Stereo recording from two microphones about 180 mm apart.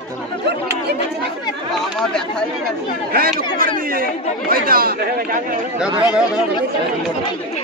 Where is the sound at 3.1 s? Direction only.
55° right (ahead or behind).